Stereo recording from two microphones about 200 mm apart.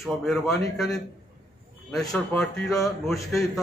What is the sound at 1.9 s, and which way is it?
A man's voice, centre (ahead or behind).